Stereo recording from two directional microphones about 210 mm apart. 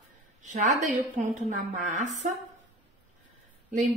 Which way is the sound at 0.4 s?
35° right (ahead or behind).